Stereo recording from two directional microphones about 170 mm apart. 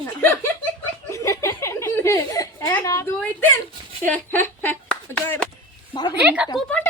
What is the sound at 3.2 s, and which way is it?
Speech, 10° left (ahead or behind).